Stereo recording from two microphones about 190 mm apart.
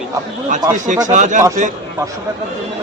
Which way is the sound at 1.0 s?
40° right (ahead or behind).